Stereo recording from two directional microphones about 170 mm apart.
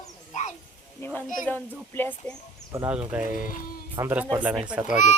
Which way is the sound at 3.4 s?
55° left (ahead or behind).